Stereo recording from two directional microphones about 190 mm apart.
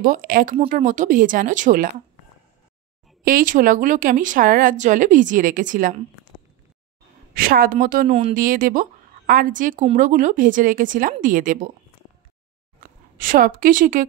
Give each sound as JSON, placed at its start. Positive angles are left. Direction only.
{"t": 0.0, "sound": "a woman's voice", "side_deg": -50}
{"t": 3.3, "sound": "a woman's voice", "side_deg": -45}
{"t": 7.3, "sound": "a woman's voice", "side_deg": -50}
{"t": 8.1, "sound": "speech", "side_deg": -30}
{"t": 8.4, "sound": "a woman's voice", "side_deg": -45}
{"t": 12.8, "sound": "speech", "side_deg": -45}